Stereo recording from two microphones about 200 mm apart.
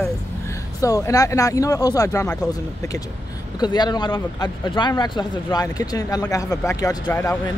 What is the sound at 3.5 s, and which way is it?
Speech, 20° left (ahead or behind).